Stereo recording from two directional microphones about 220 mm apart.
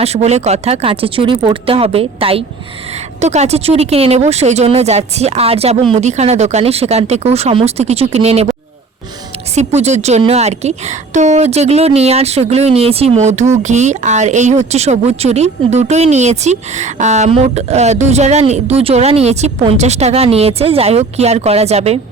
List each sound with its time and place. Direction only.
0.0 s speech: 30° right (ahead or behind)
9.6 s speech: 30° right (ahead or behind)